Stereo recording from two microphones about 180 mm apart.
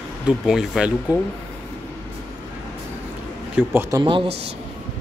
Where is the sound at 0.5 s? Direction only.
5° right (ahead or behind).